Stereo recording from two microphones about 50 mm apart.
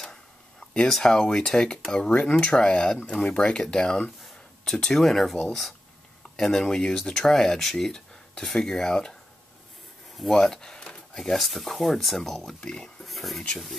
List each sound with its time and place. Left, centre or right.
0.0 s a sound: centre
1.9 s speech: centre
10.1 s speech: centre
12.5 s speech: centre
13.0 s speech: centre